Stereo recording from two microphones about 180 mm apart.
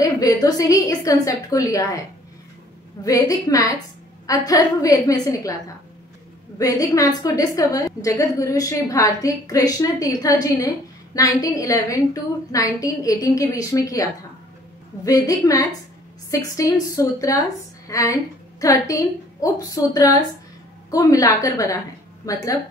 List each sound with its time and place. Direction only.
0.0 s a woman's voice: 20° left (ahead or behind)
3.0 s a woman's voice: 20° left (ahead or behind)
6.6 s a woman's voice: 20° left (ahead or behind)
15.0 s a woman's voice: 20° left (ahead or behind)